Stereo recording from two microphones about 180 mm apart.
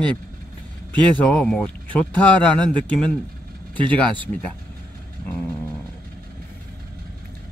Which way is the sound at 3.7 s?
25° right (ahead or behind).